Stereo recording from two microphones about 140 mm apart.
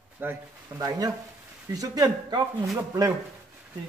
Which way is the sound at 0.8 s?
25° right (ahead or behind).